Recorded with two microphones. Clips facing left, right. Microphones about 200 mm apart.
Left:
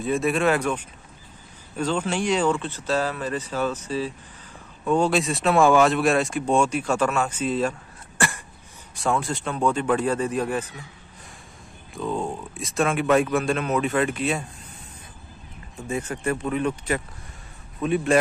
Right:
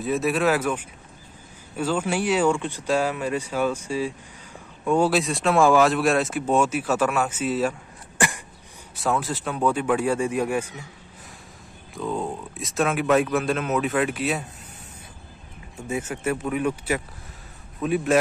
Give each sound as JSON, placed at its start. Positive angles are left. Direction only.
{"t": 0.0, "sound": "speech", "side_deg": 0}
{"t": 8.2, "sound": "throat clearing", "side_deg": -15}
{"t": 8.9, "sound": "speech", "side_deg": -5}
{"t": 11.9, "sound": "speech", "side_deg": 0}
{"t": 15.9, "sound": "speech", "side_deg": -5}